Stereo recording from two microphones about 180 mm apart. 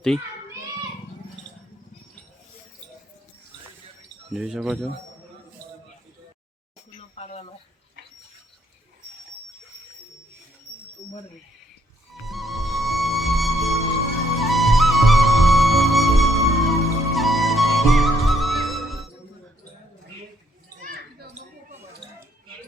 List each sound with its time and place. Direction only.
4.4 s speech: centre (ahead or behind)
7.2 s a sound: 35° left (ahead or behind)
12.2 s music: centre (ahead or behind)
20.8 s children playing: 45° right (ahead or behind)